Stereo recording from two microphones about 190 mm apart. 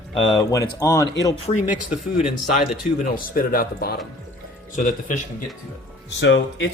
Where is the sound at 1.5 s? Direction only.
40° left (ahead or behind).